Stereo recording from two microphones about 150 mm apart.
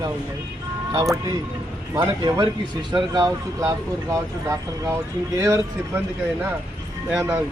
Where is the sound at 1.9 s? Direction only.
30° right (ahead or behind).